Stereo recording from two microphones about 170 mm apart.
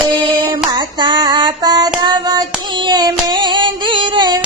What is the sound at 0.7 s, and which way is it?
Child singing, 25° right (ahead or behind).